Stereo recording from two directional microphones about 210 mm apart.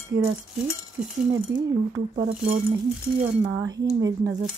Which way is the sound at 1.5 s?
20° right (ahead or behind).